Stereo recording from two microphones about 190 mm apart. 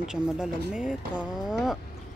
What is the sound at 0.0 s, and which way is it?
Speech, 5° right (ahead or behind).